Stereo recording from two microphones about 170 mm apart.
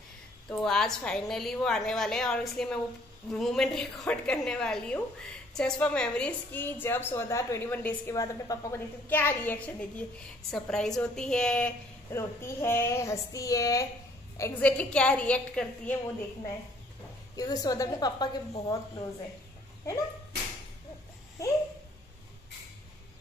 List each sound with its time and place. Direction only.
0.5 s a woman's voice: 5° left (ahead or behind)
12.1 s a woman's voice: 15° left (ahead or behind)
14.8 s a woman's voice: 5° left (ahead or behind)
17.4 s a woman's voice: 20° left (ahead or behind)